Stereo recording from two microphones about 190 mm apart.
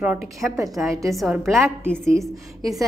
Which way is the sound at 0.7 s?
Centre (ahead or behind).